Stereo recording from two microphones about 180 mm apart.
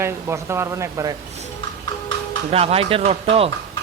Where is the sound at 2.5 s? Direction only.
35° right (ahead or behind).